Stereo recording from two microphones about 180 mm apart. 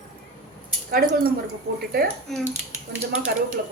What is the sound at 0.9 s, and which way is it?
Speech, 55° right (ahead or behind).